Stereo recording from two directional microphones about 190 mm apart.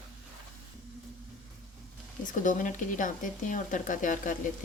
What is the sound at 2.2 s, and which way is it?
Speech, 45° left (ahead or behind).